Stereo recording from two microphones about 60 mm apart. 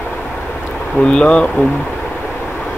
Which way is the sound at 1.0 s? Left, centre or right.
Centre.